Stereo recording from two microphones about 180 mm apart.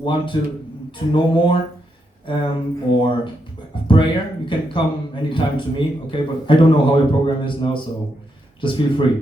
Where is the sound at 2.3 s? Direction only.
30° left (ahead or behind).